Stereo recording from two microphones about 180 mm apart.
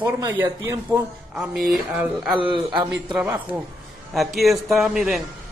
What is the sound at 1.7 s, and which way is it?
Speech, 5° right (ahead or behind).